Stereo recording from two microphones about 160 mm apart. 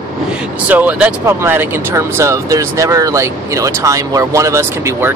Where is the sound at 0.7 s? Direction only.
10° right (ahead or behind).